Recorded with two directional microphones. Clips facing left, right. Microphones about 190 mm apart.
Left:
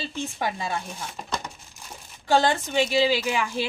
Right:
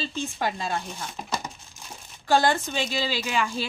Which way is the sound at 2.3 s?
20° left (ahead or behind).